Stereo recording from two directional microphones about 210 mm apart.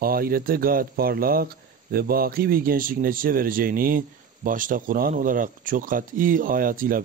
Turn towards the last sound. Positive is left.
turn(degrees=-40)  # may be behind; listen again after turning